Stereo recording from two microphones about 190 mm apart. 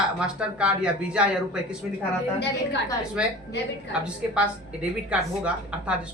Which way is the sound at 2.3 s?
65° left (ahead or behind).